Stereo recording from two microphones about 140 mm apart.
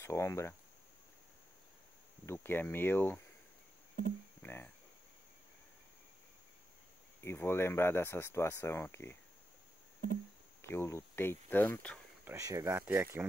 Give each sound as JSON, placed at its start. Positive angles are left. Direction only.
{"t": 0.0, "sound": "speech", "side_deg": 20}
{"t": 2.2, "sound": "speech", "side_deg": 15}
{"t": 4.4, "sound": "speech", "side_deg": 15}
{"t": 7.2, "sound": "speech", "side_deg": 15}
{"t": 10.6, "sound": "speech", "side_deg": 20}
{"t": 12.3, "sound": "speech", "side_deg": -25}